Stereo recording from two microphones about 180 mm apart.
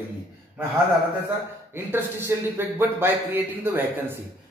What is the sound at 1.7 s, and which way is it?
A man's voice, 15° right (ahead or behind).